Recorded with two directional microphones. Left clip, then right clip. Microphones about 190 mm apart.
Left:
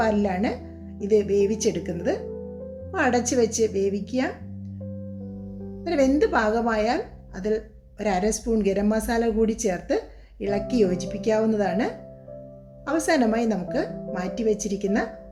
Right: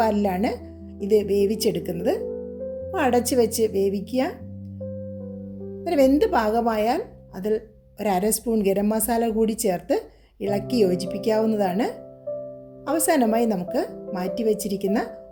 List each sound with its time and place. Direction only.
0.0 s a woman's voice: 50° right (ahead or behind)
5.8 s a woman's voice: 45° right (ahead or behind)
12.9 s a woman's voice: 50° right (ahead or behind)